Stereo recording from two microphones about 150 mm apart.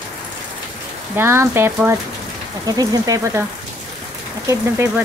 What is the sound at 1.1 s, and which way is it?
Speech, 15° right (ahead or behind).